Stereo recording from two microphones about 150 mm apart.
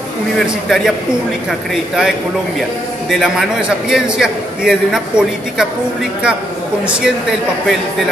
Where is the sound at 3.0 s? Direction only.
Centre (ahead or behind).